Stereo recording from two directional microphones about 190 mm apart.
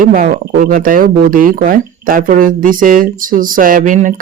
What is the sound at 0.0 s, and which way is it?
Speech, 45° right (ahead or behind).